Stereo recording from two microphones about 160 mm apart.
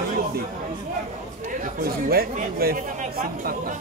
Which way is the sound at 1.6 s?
70° right (ahead or behind).